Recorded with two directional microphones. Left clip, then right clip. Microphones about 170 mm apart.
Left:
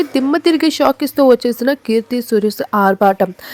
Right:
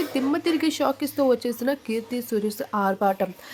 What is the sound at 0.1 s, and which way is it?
Speech, 50° left (ahead or behind).